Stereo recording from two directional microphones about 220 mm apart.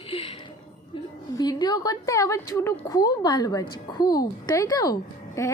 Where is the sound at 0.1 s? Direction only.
25° left (ahead or behind).